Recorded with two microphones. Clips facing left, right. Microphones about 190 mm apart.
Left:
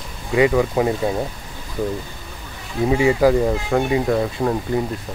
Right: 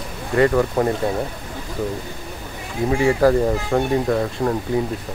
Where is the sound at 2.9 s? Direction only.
10° left (ahead or behind).